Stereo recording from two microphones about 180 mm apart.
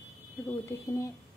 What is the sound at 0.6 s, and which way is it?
Speech, 15° left (ahead or behind).